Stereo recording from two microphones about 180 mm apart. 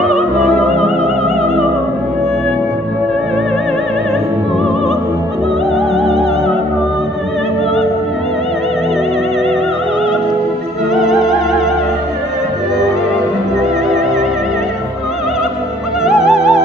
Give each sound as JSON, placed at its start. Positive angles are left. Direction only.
{"t": 5.9, "sound": "opera", "side_deg": 35}
{"t": 11.0, "sound": "music", "side_deg": 0}
{"t": 16.0, "sound": "music", "side_deg": 0}